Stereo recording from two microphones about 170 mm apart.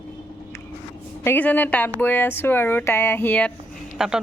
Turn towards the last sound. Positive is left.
turn(degrees=-5)  # may be behind; listen again after turning